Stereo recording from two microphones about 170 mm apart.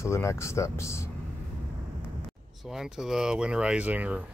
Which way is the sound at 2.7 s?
5° right (ahead or behind).